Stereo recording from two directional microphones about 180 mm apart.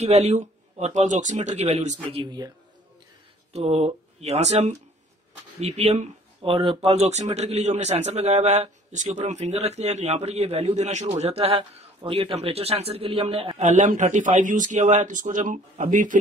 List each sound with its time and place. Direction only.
0.0 s a man's voice: 40° right (ahead or behind)
3.5 s a man's voice: 35° right (ahead or behind)